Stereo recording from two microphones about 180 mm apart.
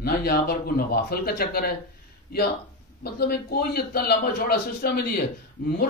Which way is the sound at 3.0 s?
60° left (ahead or behind).